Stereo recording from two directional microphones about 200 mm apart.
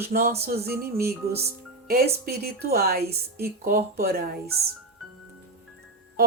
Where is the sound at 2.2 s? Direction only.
50° right (ahead or behind).